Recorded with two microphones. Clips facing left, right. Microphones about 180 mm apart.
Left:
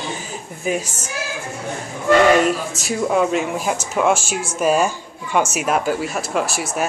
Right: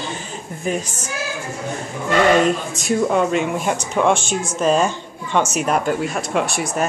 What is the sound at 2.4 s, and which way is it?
Speech, 5° left (ahead or behind).